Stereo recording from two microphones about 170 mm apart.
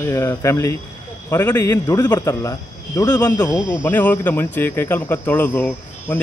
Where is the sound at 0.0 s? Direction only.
15° left (ahead or behind).